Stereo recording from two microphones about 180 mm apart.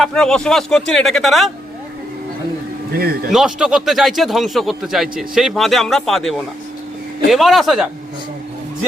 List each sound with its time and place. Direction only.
0.0 s speech: 5° left (ahead or behind)
3.0 s speech: 55° right (ahead or behind)
3.3 s speech: 5° right (ahead or behind)